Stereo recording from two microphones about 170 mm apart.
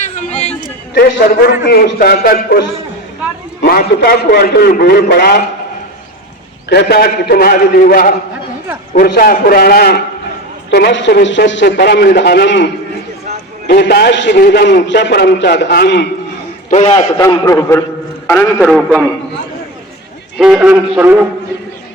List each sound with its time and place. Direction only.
0.0 s a sound: 45° left (ahead or behind)
0.9 s a man's voice: 65° left (ahead or behind)
6.7 s a man's voice: 70° left (ahead or behind)
10.7 s a man's voice: 85° left
13.7 s a man's voice: 75° left (ahead or behind)
16.6 s a man's voice: 40° left (ahead or behind)
17.2 s a man's voice: 20° left (ahead or behind)
20.4 s speech: 5° right (ahead or behind)